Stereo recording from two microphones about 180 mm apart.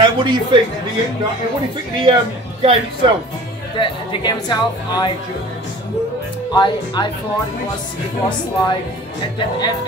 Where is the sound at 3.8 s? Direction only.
25° left (ahead or behind).